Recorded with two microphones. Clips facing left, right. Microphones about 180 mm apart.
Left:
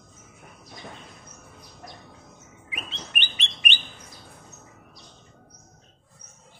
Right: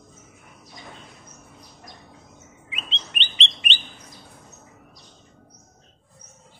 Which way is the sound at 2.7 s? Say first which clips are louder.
Left 1 dB; 25° right (ahead or behind).